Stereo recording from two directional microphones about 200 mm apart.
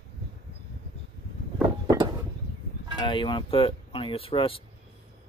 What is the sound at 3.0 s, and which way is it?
Speech, 25° left (ahead or behind).